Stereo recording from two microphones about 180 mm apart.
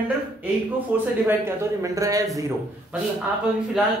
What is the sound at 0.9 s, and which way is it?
A woman's voice, 10° right (ahead or behind).